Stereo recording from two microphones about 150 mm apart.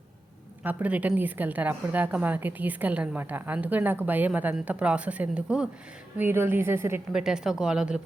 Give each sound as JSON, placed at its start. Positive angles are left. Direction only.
{"t": 0.6, "sound": "a woman's voice", "side_deg": -10}
{"t": 7.1, "sound": "speech", "side_deg": -5}